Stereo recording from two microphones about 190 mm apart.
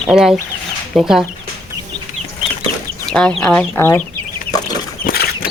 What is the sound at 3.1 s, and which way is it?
Speech, 5° left (ahead or behind).